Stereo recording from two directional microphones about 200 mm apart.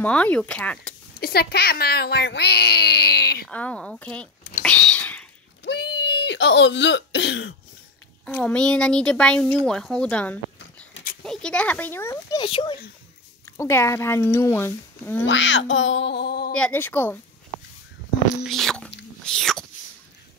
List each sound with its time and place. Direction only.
0.0 s speech: 5° left (ahead or behind)
1.2 s speech: 50° left (ahead or behind)
3.4 s speech: 5° left (ahead or behind)
5.6 s cough: 55° left (ahead or behind)
8.3 s speech: 10° left (ahead or behind); by 12.7 s 25° left (ahead or behind)
13.5 s speech: 10° left (ahead or behind)
15.2 s speech: 65° left (ahead or behind)
16.5 s speech: 5° left (ahead or behind)
18.4 s speech: centre (ahead or behind)
19.2 s wail: centre (ahead or behind)